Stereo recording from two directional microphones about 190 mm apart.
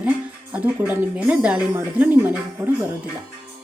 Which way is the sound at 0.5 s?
10° right (ahead or behind).